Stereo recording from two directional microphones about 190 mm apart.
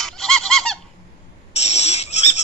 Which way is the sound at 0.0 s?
Centre (ahead or behind).